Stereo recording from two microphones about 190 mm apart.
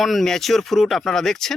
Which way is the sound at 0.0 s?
Centre (ahead or behind).